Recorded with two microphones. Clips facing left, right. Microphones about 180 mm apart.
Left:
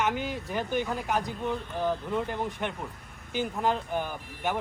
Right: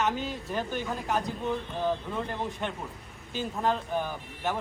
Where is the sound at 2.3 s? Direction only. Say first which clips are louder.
Left 1 dB; 15° left (ahead or behind).